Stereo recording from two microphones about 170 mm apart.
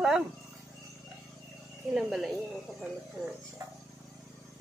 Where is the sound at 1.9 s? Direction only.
Centre (ahead or behind).